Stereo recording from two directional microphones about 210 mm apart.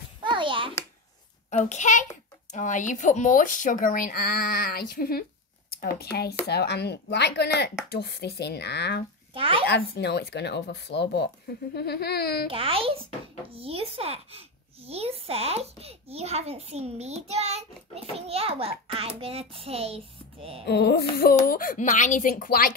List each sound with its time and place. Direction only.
0.2 s a sound: 25° right (ahead or behind)
1.5 s speech: 35° left (ahead or behind); by 9.0 s 55° left (ahead or behind)
9.3 s a child's voice: 25° right (ahead or behind)
9.7 s speech: 55° left (ahead or behind)
12.4 s a child's voice: 25° right (ahead or behind)
20.6 s speech: 50° left (ahead or behind)